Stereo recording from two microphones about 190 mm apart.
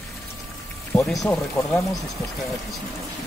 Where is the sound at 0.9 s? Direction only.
Centre (ahead or behind).